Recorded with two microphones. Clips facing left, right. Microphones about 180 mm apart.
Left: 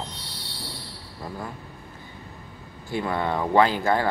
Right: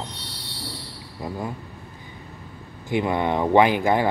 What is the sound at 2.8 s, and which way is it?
Speech, 20° right (ahead or behind).